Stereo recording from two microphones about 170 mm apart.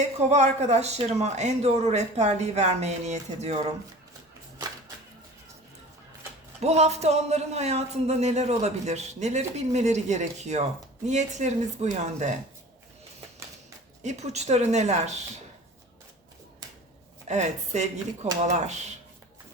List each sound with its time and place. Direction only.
0.0 s a man's voice: 40° right (ahead or behind)
6.6 s a man's voice: 40° right (ahead or behind)
14.0 s a man's voice: 40° right (ahead or behind)
17.2 s a woman's voice: 45° right (ahead or behind)